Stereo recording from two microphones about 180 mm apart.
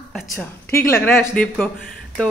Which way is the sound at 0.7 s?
10° left (ahead or behind).